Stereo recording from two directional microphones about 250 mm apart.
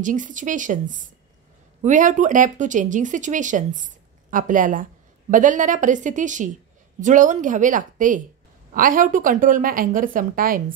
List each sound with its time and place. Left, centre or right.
0.0 s speech: right